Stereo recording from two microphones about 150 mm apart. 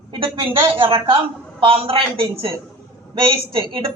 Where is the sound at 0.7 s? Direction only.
35° right (ahead or behind).